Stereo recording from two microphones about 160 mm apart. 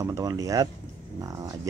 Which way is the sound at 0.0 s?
20° right (ahead or behind).